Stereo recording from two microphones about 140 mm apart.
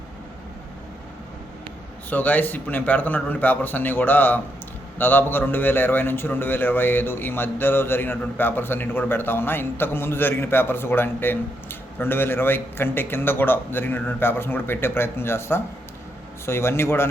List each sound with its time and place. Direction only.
2.0 s a man's voice: 10° left (ahead or behind)